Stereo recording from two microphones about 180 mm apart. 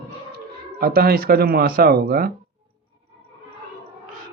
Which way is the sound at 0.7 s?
55° right (ahead or behind).